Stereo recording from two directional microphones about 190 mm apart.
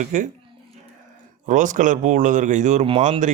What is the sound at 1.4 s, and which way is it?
Speech, 40° right (ahead or behind).